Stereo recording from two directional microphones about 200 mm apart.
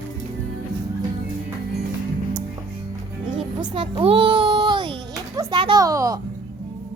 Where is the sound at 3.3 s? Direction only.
25° right (ahead or behind).